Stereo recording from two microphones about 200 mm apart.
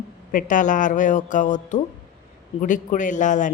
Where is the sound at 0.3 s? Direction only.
40° left (ahead or behind).